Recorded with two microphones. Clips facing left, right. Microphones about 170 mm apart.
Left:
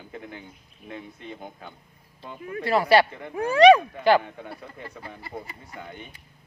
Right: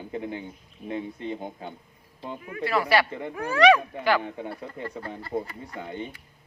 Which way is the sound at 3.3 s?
20° left (ahead or behind).